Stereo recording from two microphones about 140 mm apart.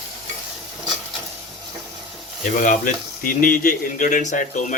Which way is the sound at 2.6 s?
70° left (ahead or behind).